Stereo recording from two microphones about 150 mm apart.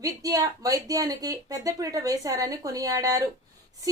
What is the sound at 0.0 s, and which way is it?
A woman's voice, 25° right (ahead or behind).